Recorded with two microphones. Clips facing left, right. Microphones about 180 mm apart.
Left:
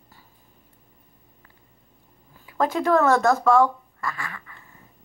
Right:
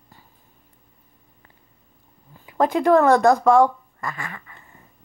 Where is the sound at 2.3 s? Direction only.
15° right (ahead or behind).